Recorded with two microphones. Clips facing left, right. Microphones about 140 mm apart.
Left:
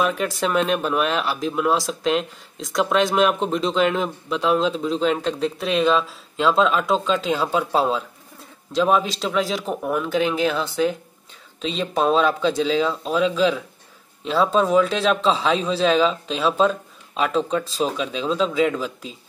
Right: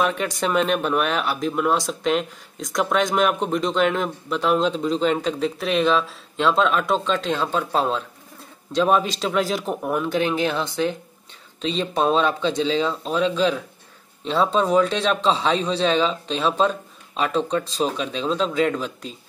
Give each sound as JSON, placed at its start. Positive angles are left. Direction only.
{"t": 0.0, "sound": "speech", "side_deg": 0}